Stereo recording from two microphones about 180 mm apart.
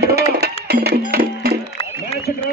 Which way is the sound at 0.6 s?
60° right (ahead or behind).